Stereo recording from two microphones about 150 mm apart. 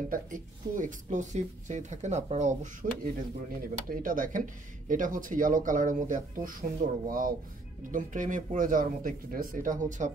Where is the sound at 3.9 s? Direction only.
65° right (ahead or behind).